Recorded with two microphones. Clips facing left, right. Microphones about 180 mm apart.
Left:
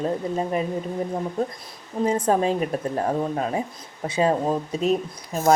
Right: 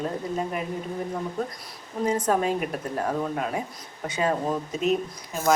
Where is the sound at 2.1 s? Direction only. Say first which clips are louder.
Left 2 dB; 30° left (ahead or behind).